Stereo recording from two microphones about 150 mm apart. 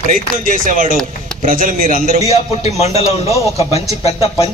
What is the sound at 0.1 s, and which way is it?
Speech, 65° right (ahead or behind).